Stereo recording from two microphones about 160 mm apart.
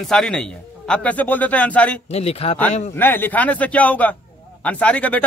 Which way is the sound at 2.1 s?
40° left (ahead or behind).